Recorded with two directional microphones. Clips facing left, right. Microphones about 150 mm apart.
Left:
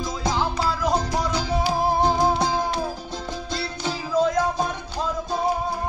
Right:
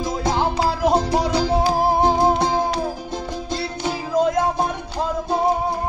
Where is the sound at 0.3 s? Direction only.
60° right (ahead or behind).